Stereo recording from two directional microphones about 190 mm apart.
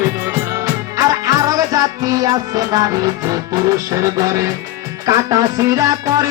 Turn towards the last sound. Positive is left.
turn(degrees=-20)  # may be behind; listen again after turning